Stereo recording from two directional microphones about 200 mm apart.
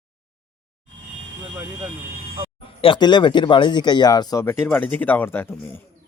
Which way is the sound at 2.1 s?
45° right (ahead or behind).